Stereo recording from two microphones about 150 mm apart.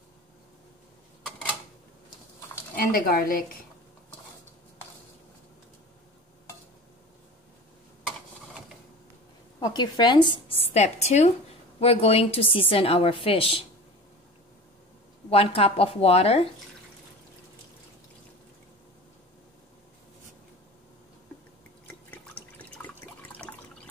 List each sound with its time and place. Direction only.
2.7 s speech: 80° left
9.6 s a woman's voice: 30° left (ahead or behind)
15.2 s a woman's voice: 40° left (ahead or behind)
22.1 s water: 10° left (ahead or behind)